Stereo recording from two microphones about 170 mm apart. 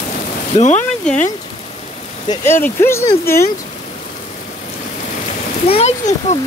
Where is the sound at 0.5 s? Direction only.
40° left (ahead or behind).